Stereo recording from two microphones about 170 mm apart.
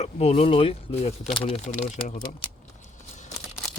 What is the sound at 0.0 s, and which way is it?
Speech, 35° left (ahead or behind).